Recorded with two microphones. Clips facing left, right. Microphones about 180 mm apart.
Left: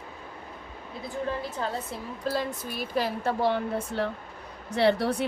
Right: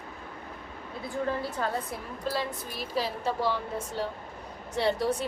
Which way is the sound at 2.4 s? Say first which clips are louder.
Left 2 dB; 55° left (ahead or behind).